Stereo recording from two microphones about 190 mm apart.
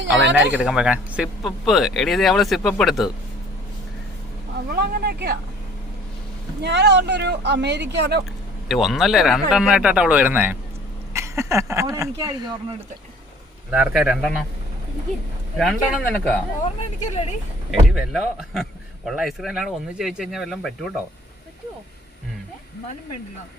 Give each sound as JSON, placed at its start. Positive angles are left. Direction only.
{"t": 0.0, "sound": "speech", "side_deg": -70}
{"t": 0.5, "sound": "speech", "side_deg": -5}
{"t": 4.7, "sound": "speech", "side_deg": -55}
{"t": 6.6, "sound": "speech", "side_deg": -65}
{"t": 8.6, "sound": "speech", "side_deg": 0}
{"t": 13.7, "sound": "speech", "side_deg": -10}
{"t": 15.5, "sound": "speech", "side_deg": 0}
{"t": 17.7, "sound": "speech", "side_deg": 0}